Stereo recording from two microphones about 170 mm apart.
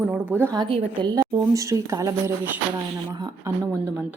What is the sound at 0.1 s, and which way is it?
Speech, 10° right (ahead or behind).